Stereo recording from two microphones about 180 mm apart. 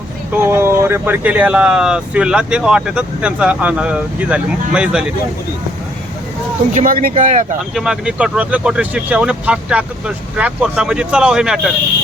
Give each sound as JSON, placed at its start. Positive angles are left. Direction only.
{"t": 0.3, "sound": "speech", "side_deg": -15}
{"t": 6.7, "sound": "speech", "side_deg": -50}
{"t": 7.7, "sound": "speech", "side_deg": -5}